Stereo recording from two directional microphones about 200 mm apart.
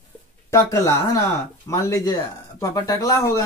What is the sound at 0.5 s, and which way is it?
Speech, 15° left (ahead or behind).